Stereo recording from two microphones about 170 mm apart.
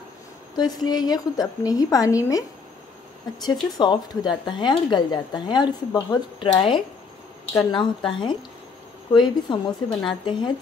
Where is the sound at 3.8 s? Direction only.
25° left (ahead or behind).